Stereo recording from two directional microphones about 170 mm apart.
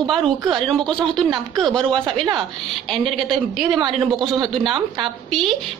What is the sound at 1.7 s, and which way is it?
Speech, 30° right (ahead or behind).